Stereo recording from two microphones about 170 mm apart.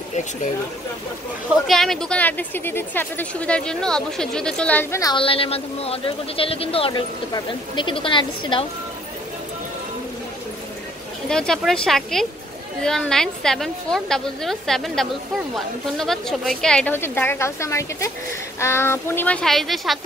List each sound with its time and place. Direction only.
0.1 s speech: 45° left (ahead or behind)
1.7 s speech: centre (ahead or behind)
5.1 s speech: 30° left (ahead or behind)
11.2 s a woman's voice: 5° left (ahead or behind)